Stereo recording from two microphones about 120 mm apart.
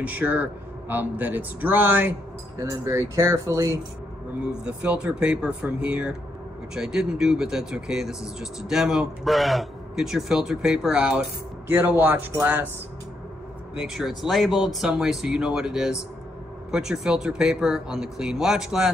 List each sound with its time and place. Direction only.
0.0 s speech: 10° right (ahead or behind)
4.5 s speech: 10° right (ahead or behind)
13.7 s speech: 5° right (ahead or behind)